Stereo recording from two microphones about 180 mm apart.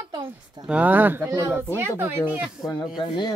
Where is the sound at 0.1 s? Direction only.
20° right (ahead or behind).